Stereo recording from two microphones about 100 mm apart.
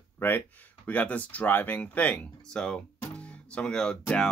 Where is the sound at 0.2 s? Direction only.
20° left (ahead or behind).